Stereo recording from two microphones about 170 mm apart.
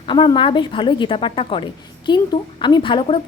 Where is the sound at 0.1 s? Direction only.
30° left (ahead or behind).